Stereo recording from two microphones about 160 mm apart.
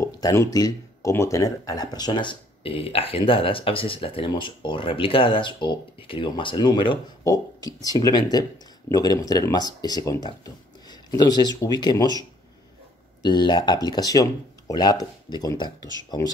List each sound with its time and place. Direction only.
0.0 s speech: 20° left (ahead or behind)